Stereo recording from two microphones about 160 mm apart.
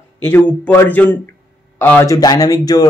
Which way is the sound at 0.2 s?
10° left (ahead or behind).